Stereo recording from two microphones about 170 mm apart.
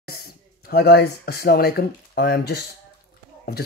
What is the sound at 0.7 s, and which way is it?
Speech, 70° left (ahead or behind).